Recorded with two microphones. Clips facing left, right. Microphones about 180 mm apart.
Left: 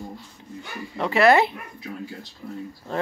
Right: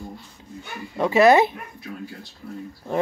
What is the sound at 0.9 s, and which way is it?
Speech, 15° right (ahead or behind).